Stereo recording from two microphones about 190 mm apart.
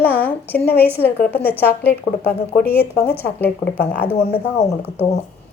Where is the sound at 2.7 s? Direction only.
10° left (ahead or behind).